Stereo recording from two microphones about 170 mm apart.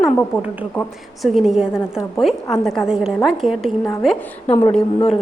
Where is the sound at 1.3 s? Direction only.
5° right (ahead or behind).